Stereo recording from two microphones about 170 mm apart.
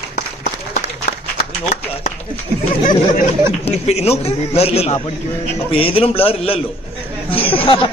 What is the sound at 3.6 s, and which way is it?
A man's voice, 40° left (ahead or behind).